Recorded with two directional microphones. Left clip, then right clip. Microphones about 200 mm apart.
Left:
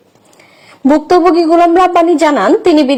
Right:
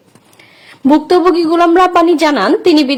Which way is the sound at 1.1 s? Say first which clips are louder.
Left 4 dB; 20° right (ahead or behind).